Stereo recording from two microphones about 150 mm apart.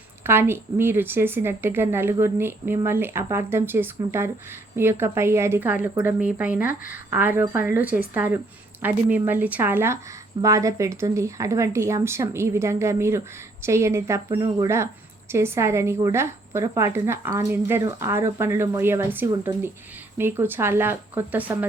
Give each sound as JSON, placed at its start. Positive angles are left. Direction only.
{"t": 0.3, "sound": "a woman's voice", "side_deg": -15}
{"t": 14.3, "sound": "speech", "side_deg": -30}
{"t": 15.3, "sound": "a woman's voice", "side_deg": -15}